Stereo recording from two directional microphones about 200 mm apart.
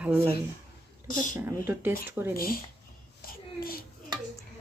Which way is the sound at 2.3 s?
45° left (ahead or behind).